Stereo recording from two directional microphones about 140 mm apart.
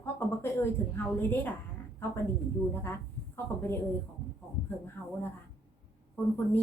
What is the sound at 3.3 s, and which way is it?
Speech, 15° left (ahead or behind).